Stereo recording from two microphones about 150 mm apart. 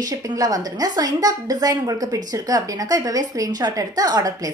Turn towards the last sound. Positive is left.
turn(degrees=-25)  # may be behind; listen again after turning